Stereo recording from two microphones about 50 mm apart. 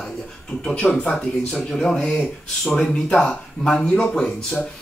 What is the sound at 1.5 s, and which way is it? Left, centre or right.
Speech, centre.